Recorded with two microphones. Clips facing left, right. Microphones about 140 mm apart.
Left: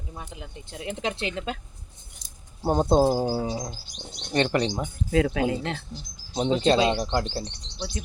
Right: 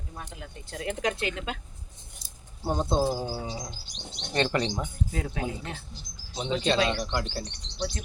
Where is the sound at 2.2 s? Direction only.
20° left (ahead or behind).